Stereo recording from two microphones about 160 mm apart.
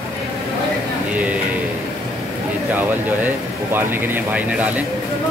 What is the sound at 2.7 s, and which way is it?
Speech, 10° right (ahead or behind).